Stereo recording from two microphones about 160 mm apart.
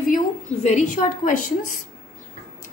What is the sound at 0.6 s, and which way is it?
Speech, 50° left (ahead or behind).